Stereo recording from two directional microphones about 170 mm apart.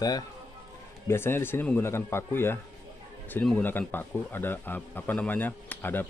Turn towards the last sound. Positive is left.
turn(degrees=10)  # may be behind; listen again after turning